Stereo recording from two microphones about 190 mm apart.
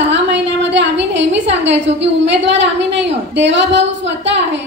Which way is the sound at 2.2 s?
70° right (ahead or behind).